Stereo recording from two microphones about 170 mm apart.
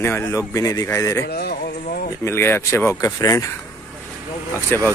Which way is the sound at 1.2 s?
65° left (ahead or behind).